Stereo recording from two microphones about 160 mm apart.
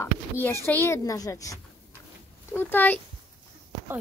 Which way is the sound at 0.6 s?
15° left (ahead or behind).